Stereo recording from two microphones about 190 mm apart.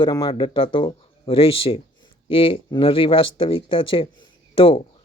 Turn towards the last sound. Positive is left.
turn(degrees=30)  # may be behind; listen again after turning